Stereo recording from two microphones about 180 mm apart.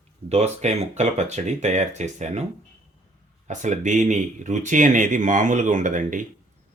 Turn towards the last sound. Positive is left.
turn(degrees=-45)  # may be behind; listen again after turning